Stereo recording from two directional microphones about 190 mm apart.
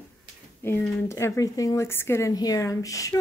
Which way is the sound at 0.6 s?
15° left (ahead or behind).